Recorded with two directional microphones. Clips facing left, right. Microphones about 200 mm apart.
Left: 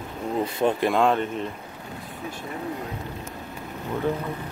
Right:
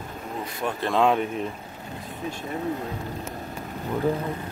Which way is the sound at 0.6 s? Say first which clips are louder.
Left 6 dB; 25° left (ahead or behind).